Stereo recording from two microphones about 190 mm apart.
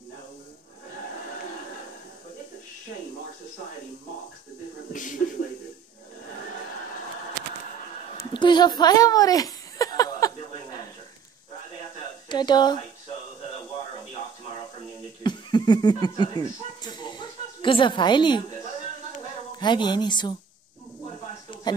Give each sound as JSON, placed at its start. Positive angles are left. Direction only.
{"t": 4.9, "sound": "speech", "side_deg": 45}
{"t": 8.2, "sound": "a sound", "side_deg": 25}
{"t": 12.3, "sound": "speech", "side_deg": 25}
{"t": 15.2, "sound": "a sound", "side_deg": 20}
{"t": 19.6, "sound": "speech", "side_deg": 25}
{"t": 21.7, "sound": "speech", "side_deg": 20}